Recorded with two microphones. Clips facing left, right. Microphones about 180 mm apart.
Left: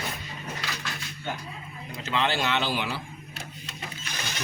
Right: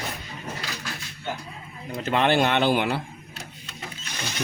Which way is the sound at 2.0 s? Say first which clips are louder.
Right 6 dB; 55° right (ahead or behind).